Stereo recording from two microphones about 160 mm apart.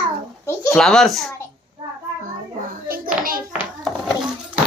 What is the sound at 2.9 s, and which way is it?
Hands, 65° right (ahead or behind).